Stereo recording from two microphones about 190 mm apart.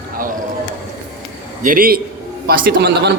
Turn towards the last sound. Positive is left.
turn(degrees=-60)  # may be behind; listen again after turning